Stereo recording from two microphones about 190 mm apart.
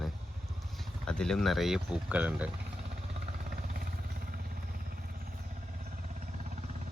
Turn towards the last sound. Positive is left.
turn(degrees=-40)  # may be behind; listen again after turning